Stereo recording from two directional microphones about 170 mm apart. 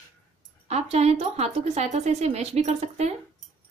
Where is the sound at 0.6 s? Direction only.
40° right (ahead or behind).